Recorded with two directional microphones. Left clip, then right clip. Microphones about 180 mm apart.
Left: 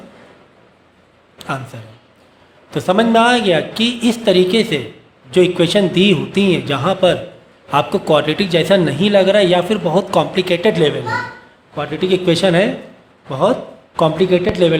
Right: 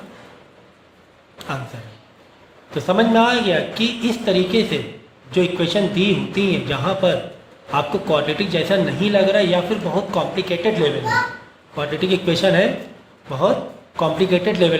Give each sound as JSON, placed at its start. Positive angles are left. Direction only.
{"t": 2.6, "sound": "a man's voice", "side_deg": 40}
{"t": 13.9, "sound": "speech", "side_deg": 35}